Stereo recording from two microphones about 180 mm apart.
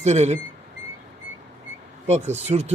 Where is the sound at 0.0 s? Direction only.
40° right (ahead or behind).